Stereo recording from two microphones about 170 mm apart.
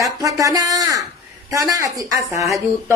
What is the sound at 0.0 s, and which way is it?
Speech, 20° right (ahead or behind).